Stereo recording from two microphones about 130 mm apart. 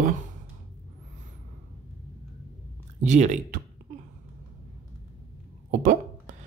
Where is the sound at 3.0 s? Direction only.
65° right (ahead or behind).